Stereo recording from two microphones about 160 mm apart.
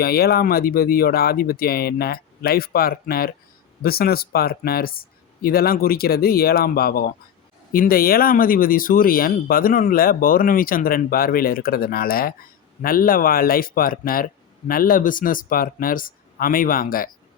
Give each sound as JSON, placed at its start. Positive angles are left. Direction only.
{"t": 0.0, "sound": "speech", "side_deg": 75}